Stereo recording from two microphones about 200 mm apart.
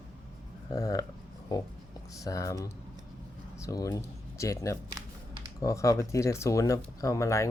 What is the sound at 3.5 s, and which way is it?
Speech, 15° left (ahead or behind).